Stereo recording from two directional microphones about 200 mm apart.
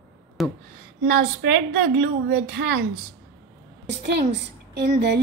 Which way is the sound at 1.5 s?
60° right (ahead or behind).